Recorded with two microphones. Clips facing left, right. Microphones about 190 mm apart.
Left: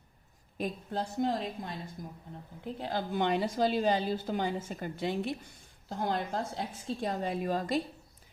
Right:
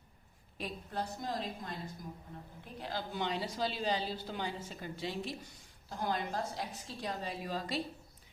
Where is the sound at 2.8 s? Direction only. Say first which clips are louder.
Left 6 dB; 55° left (ahead or behind).